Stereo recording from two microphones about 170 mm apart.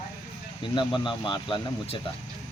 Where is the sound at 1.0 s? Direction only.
30° left (ahead or behind).